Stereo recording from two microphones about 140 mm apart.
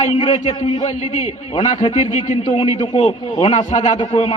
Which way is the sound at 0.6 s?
45° left (ahead or behind).